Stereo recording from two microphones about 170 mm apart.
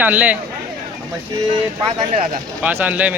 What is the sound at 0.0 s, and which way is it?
Speech, 10° right (ahead or behind).